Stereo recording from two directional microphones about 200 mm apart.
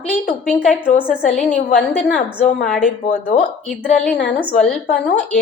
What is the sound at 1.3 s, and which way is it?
Speech, 35° left (ahead or behind).